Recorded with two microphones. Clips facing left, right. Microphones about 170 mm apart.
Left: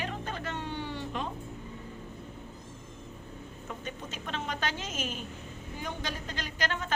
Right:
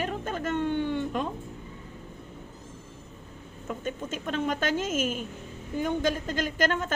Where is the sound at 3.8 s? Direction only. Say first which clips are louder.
Right 9 dB; 50° right (ahead or behind).